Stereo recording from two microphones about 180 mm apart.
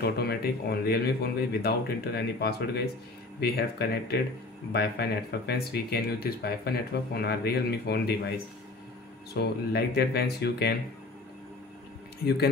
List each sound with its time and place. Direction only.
0.0 s speech: 60° left (ahead or behind)